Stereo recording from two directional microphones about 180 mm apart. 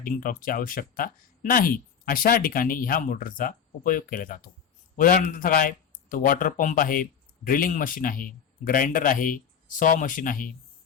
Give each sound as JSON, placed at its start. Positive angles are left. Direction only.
{"t": 0.0, "sound": "speech", "side_deg": 50}